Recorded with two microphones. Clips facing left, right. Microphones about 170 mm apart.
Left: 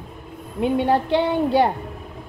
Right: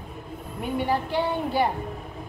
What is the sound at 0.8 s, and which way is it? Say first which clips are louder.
Child singing: left 4 dB; 70° left (ahead or behind).